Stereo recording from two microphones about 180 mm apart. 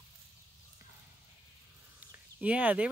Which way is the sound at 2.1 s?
5° right (ahead or behind).